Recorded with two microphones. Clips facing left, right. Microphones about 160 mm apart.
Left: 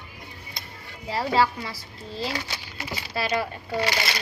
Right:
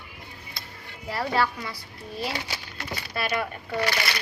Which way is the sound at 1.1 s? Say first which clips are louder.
Left 3 dB; 25° left (ahead or behind).